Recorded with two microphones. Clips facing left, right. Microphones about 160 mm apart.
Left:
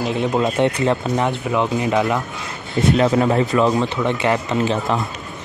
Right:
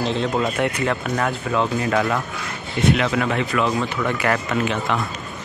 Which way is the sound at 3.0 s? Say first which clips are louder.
Left 5 dB; 35° left (ahead or behind).